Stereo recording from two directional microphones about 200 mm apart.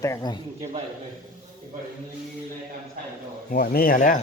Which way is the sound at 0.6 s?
30° right (ahead or behind).